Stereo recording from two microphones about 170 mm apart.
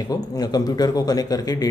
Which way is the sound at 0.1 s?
20° left (ahead or behind).